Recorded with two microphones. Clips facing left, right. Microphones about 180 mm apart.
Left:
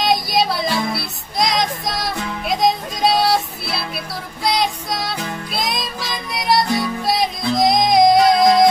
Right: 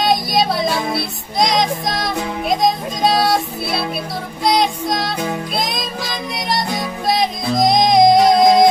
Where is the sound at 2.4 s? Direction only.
Centre (ahead or behind).